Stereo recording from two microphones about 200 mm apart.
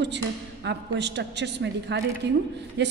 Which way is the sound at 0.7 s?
60° right (ahead or behind).